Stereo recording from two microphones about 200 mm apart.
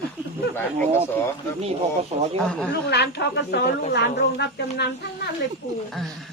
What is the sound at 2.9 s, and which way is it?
Speech, 55° left (ahead or behind).